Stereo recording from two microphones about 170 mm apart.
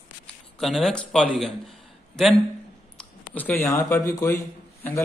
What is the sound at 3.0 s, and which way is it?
Speech, 10° left (ahead or behind).